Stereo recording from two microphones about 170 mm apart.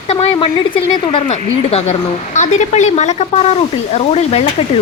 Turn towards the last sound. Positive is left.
turn(degrees=40)  # may be behind; listen again after turning